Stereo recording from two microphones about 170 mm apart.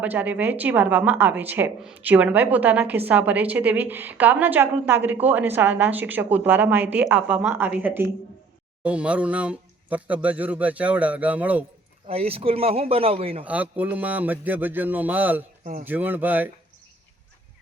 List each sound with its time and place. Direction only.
0.0 s a woman's voice: 10° right (ahead or behind)
12.0 s a man's voice: 35° right (ahead or behind)
13.4 s a woman's voice: 10° right (ahead or behind)